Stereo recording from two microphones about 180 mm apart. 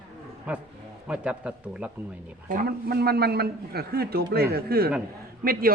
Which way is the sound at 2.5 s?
55° right (ahead or behind).